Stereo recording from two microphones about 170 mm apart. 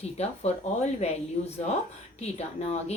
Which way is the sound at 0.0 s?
40° left (ahead or behind).